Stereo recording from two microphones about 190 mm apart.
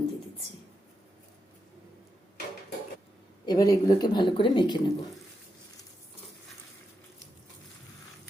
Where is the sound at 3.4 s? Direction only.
20° left (ahead or behind).